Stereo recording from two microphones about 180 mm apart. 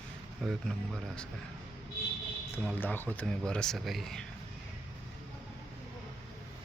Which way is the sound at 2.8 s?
10° left (ahead or behind).